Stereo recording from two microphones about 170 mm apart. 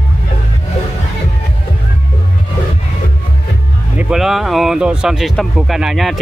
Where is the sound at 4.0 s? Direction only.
5° right (ahead or behind).